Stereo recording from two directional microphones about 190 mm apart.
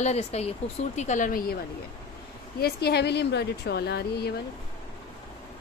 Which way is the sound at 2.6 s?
55° left (ahead or behind).